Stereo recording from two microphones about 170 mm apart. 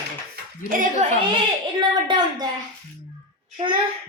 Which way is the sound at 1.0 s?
40° right (ahead or behind).